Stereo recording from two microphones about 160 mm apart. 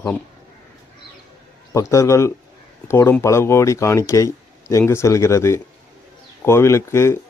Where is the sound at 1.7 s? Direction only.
20° left (ahead or behind).